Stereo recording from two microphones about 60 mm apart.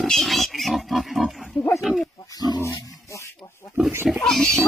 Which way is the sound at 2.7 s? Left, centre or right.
Left.